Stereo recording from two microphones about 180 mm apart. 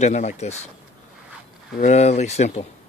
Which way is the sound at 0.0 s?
40° left (ahead or behind).